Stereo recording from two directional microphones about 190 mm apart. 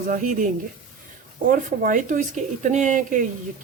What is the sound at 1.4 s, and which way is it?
A woman's voice, 45° right (ahead or behind).